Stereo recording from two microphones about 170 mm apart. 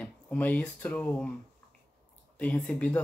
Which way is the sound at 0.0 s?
10° left (ahead or behind).